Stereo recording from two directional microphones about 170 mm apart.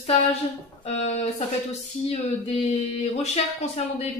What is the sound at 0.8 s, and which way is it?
Speech, 40° left (ahead or behind).